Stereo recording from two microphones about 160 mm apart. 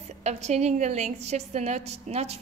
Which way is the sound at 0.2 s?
45° right (ahead or behind).